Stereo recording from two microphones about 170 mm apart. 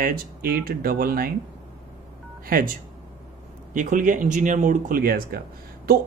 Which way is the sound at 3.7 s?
50° right (ahead or behind).